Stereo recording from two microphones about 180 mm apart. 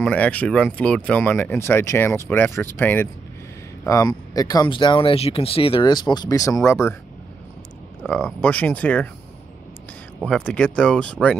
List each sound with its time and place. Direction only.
0.0 s speech: 10° left (ahead or behind)
8.0 s speech: 5° left (ahead or behind)
10.2 s speech: 5° left (ahead or behind)